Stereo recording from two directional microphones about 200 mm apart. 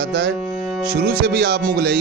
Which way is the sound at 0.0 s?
55° right (ahead or behind).